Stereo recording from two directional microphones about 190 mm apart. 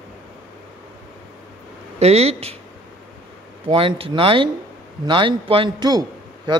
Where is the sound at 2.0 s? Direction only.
35° right (ahead or behind).